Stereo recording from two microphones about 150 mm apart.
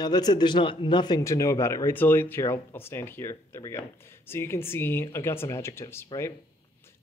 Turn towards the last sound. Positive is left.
turn(degrees=20)  # may be behind; listen again after turning